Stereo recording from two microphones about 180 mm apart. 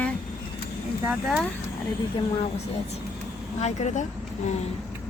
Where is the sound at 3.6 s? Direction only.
40° left (ahead or behind).